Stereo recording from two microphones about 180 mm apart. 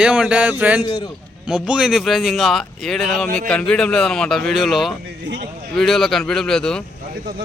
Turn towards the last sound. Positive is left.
turn(degrees=5)  # may be behind; listen again after turning